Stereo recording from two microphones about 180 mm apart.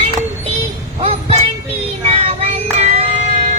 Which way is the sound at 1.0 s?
35° right (ahead or behind).